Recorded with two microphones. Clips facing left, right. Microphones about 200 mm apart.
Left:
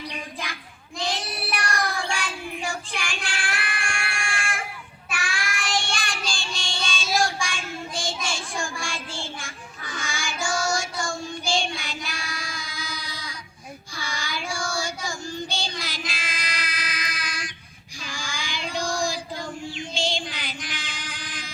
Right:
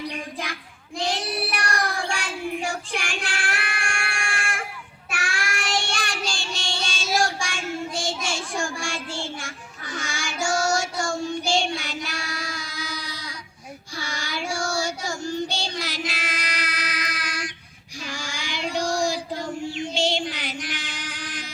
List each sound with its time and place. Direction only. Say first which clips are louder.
1.5 s child singing: right 1 dB; 40° right (ahead or behind)
2.6 s child singing: right 2 dB; 65° right (ahead or behind)
3.3 s child singing: right 1 dB; 40° right (ahead or behind)
3.8 s a sound: right 1 dB; 45° right (ahead or behind)
5.1 s child singing: right 2 dB; 70° right (ahead or behind)
19.8 s music: right 4 dB; 70° right (ahead or behind)